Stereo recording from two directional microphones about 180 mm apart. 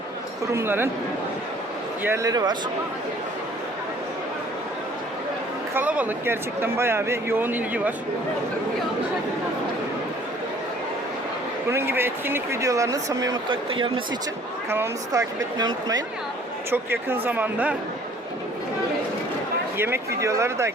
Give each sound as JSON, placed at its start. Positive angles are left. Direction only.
{"t": 0.5, "sound": "speech", "side_deg": -10}
{"t": 2.0, "sound": "a woman's voice", "side_deg": -15}
{"t": 5.7, "sound": "speech", "side_deg": -10}
{"t": 11.7, "sound": "speech", "side_deg": -15}
{"t": 14.7, "sound": "a woman's voice", "side_deg": -15}
{"t": 19.7, "sound": "speech", "side_deg": -15}